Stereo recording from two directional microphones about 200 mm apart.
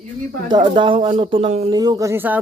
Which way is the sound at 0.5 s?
25° right (ahead or behind).